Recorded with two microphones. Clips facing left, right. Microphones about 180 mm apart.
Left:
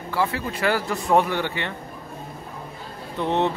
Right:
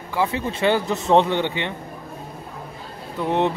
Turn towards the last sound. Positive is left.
turn(degrees=-10)  # may be behind; listen again after turning